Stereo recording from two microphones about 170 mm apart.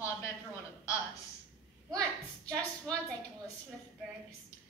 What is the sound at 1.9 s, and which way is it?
Speech, 5° left (ahead or behind).